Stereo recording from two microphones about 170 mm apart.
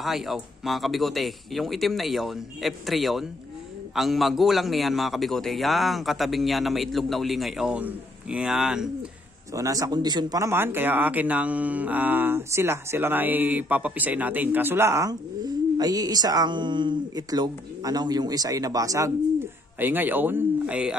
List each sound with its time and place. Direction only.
0.0 s a man's voice: centre (ahead or behind)
9.5 s speech: 20° right (ahead or behind)